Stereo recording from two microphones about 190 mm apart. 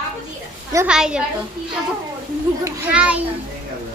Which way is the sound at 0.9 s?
5° right (ahead or behind).